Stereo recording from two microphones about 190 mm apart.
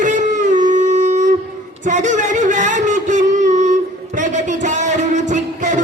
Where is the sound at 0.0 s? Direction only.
40° right (ahead or behind).